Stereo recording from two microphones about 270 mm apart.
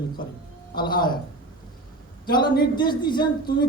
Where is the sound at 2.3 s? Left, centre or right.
Centre.